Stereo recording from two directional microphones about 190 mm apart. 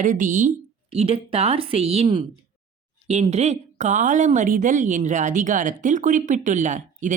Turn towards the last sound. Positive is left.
turn(degrees=-40)  # may be behind; listen again after turning